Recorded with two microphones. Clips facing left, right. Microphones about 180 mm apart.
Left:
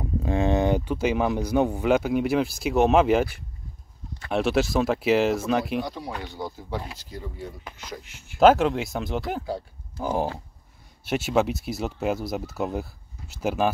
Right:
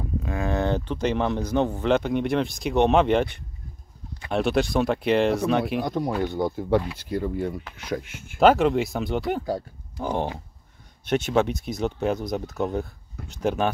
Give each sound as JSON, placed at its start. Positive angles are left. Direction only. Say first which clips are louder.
{"t": 0.2, "sound": "speech", "louder": "left 4 dB", "side_deg": 25}
{"t": 5.9, "sound": "speech", "louder": "right 8 dB", "side_deg": -50}
{"t": 8.4, "sound": "speech", "louder": "even", "side_deg": 0}